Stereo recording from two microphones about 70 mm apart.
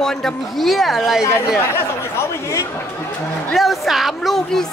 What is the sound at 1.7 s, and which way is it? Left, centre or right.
Speech, left.